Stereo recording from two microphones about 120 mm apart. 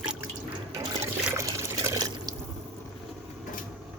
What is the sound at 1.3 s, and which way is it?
Pour, 25° right (ahead or behind).